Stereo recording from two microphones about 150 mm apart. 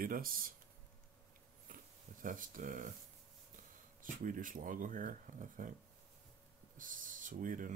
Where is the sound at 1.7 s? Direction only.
60° right (ahead or behind).